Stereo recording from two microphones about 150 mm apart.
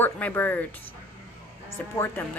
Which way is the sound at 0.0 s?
10° left (ahead or behind).